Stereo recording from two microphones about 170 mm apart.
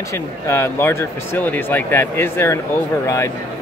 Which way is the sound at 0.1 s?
15° left (ahead or behind).